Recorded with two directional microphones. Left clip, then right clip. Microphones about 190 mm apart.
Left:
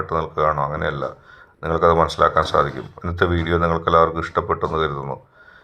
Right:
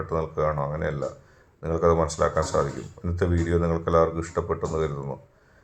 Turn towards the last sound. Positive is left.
turn(degrees=15)  # may be behind; listen again after turning